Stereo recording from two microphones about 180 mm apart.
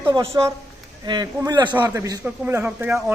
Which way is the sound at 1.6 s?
10° right (ahead or behind).